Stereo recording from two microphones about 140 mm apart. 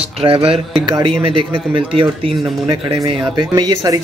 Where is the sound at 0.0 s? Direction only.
40° right (ahead or behind).